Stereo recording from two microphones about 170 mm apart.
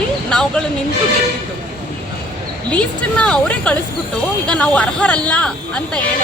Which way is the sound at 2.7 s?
5° left (ahead or behind).